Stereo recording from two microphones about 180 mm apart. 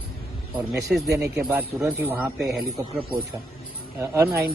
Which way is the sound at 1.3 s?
5° right (ahead or behind).